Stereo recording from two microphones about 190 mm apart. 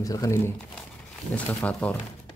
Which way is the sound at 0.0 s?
20° left (ahead or behind).